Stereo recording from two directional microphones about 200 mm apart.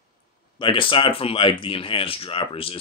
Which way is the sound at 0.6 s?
25° left (ahead or behind).